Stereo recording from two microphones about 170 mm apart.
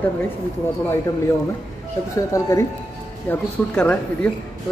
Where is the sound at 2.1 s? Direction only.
20° left (ahead or behind).